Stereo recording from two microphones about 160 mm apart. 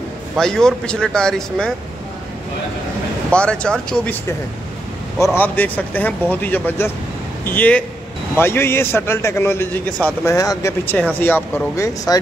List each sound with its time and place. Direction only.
0.4 s speech: 5° left (ahead or behind)
3.3 s a man's voice: 5° left (ahead or behind)
10.3 s a man's voice: 20° left (ahead or behind)